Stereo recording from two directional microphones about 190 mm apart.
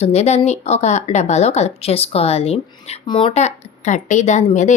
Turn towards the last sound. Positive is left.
turn(degrees=40)  # may be behind; listen again after turning